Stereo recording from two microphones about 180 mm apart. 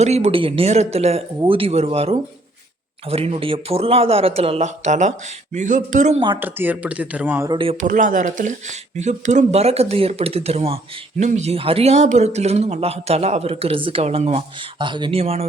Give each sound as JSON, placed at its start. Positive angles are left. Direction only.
{"t": 0.0, "sound": "speech", "side_deg": -35}
{"t": 6.1, "sound": "speech", "side_deg": -25}
{"t": 6.4, "sound": "speech", "side_deg": -10}
{"t": 7.5, "sound": "speech", "side_deg": -30}
{"t": 7.8, "sound": "speech", "side_deg": -45}